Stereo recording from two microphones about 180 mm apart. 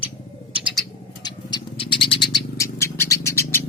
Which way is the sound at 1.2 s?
25° left (ahead or behind).